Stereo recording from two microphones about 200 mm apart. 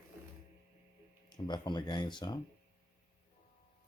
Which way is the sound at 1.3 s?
20° left (ahead or behind).